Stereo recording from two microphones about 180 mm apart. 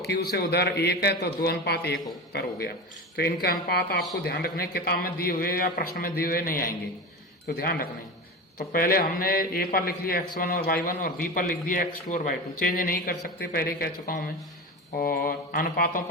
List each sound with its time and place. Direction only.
0.1 s a man's voice: 60° left (ahead or behind)